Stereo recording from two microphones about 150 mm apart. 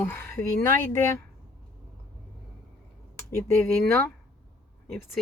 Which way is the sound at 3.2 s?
15° left (ahead or behind).